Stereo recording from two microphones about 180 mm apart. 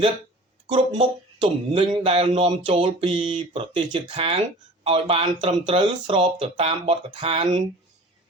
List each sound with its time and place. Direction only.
0.7 s speech: 30° right (ahead or behind)